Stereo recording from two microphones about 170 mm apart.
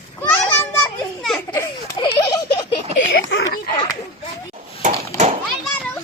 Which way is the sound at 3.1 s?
85° left.